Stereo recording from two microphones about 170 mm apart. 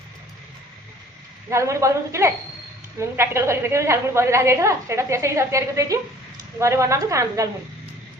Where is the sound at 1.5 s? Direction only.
15° right (ahead or behind).